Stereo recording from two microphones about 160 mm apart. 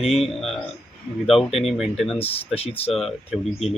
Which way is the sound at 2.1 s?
35° left (ahead or behind).